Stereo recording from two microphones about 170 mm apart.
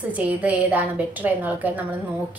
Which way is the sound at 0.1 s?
10° right (ahead or behind).